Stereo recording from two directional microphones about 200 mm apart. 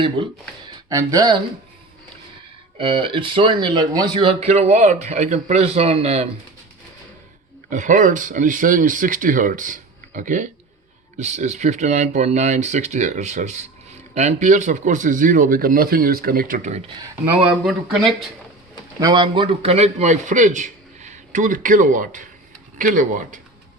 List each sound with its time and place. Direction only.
0.9 s speech: 15° right (ahead or behind)
2.7 s speech: 25° right (ahead or behind)
7.7 s speech: 40° right (ahead or behind)
18.9 s speech: 20° right (ahead or behind); by 23.4 s 40° right (ahead or behind)